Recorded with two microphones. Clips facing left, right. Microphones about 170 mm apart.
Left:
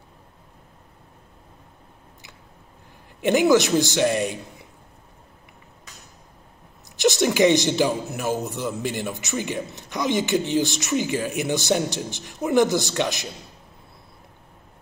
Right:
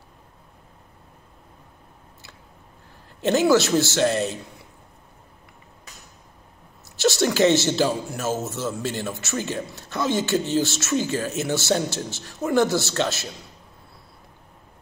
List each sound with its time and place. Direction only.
3.2 s speech: 15° left (ahead or behind)
7.0 s speech: 20° left (ahead or behind)